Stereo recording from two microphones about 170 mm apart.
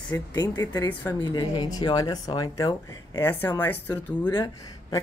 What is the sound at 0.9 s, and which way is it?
Speech, 10° left (ahead or behind).